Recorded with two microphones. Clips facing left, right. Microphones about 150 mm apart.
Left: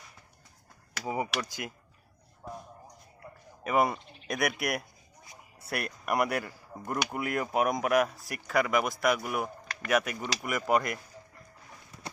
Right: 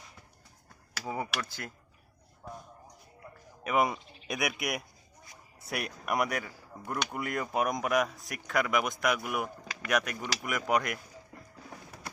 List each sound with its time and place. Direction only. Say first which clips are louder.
1.0 s speech: left 3 dB; 10° left (ahead or behind)
2.4 s a sound: left 2 dB; 10° left (ahead or behind)
3.6 s speech: left 1 dB; centre (ahead or behind)